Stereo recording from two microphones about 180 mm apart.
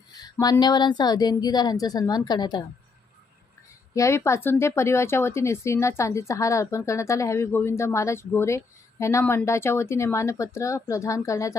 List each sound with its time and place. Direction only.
0.3 s a woman's voice: 20° left (ahead or behind)
3.9 s speech: 15° left (ahead or behind)